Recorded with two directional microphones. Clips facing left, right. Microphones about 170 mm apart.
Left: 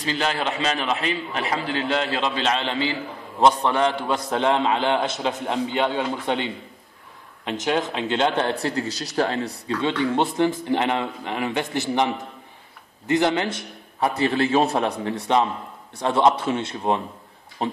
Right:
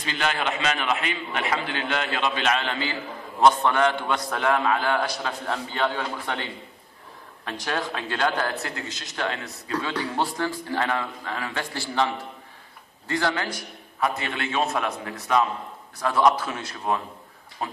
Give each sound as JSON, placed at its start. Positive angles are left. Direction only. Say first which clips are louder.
{"t": 0.0, "sound": "a man's voice", "louder": "left 2 dB", "side_deg": 35}